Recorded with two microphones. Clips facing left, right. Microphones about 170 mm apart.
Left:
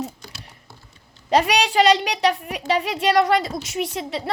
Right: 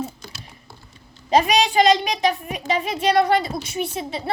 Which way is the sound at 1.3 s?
70° left (ahead or behind).